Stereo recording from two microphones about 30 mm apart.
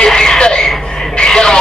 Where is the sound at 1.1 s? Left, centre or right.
Left.